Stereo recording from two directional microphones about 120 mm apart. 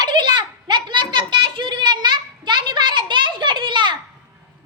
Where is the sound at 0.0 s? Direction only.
40° right (ahead or behind).